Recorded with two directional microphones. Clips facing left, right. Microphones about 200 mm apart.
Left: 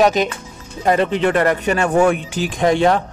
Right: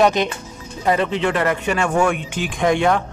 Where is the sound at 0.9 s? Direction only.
45° left (ahead or behind).